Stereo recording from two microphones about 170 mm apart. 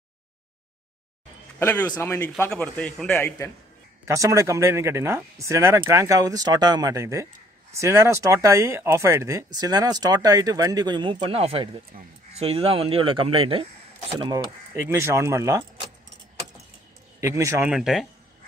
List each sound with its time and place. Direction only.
1.9 s a man's voice: 15° left (ahead or behind)
4.0 s speech: 15° right (ahead or behind)
14.7 s speech: 15° right (ahead or behind)
17.2 s speech: 15° right (ahead or behind)
17.6 s speech: centre (ahead or behind)